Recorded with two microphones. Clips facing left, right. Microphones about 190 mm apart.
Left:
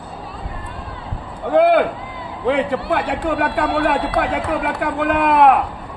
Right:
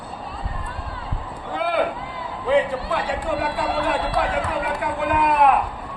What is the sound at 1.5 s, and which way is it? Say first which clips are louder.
Speech: left 9 dB; 65° left (ahead or behind).